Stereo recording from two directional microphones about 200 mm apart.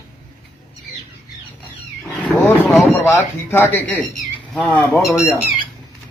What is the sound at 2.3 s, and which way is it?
Vehicle, 10° left (ahead or behind).